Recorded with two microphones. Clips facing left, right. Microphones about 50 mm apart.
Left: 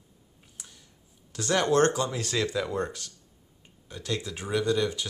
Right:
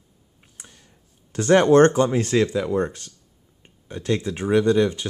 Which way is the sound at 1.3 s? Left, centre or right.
Right.